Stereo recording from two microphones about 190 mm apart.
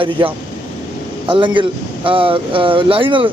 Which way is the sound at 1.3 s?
25° right (ahead or behind).